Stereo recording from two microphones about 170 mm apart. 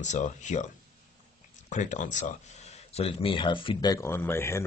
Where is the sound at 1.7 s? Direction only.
45° left (ahead or behind).